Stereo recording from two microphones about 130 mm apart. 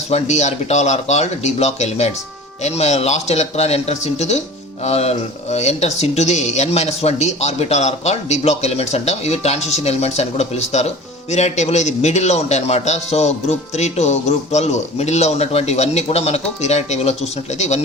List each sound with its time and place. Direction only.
0.1 s speech: 60° left (ahead or behind)